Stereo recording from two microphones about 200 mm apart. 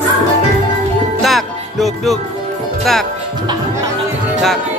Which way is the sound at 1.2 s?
Centre (ahead or behind).